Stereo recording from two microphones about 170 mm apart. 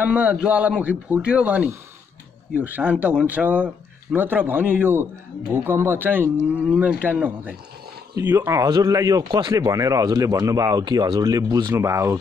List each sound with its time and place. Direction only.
0.0 s speech: 5° right (ahead or behind)